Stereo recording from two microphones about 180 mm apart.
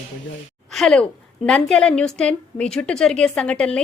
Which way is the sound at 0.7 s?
Centre (ahead or behind).